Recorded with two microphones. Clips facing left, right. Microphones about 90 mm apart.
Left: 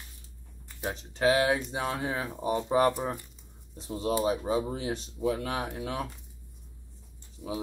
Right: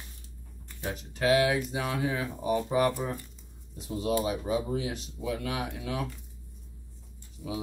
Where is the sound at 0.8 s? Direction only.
30° left (ahead or behind).